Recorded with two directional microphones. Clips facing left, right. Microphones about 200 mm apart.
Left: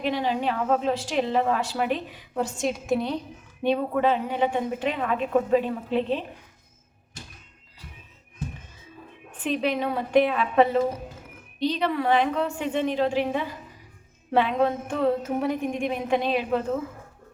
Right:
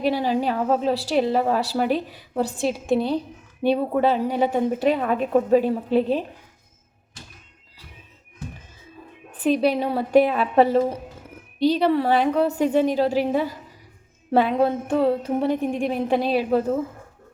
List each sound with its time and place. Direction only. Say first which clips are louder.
0.0 s a woman's voice: right 4 dB; 40° right (ahead or behind)
9.4 s a woman's voice: right 5 dB; 35° right (ahead or behind)